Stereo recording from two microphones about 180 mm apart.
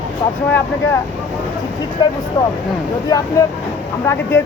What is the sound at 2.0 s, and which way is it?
Speech, 25° left (ahead or behind).